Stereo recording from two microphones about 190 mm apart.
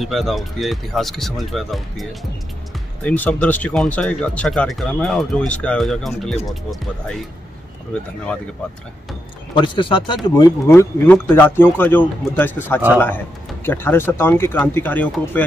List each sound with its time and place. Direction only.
0.0 s speech: centre (ahead or behind)
9.6 s speech: 25° left (ahead or behind); by 15.4 s 10° left (ahead or behind)